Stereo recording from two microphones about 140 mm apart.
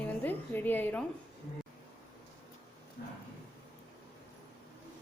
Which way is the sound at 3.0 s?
90° left.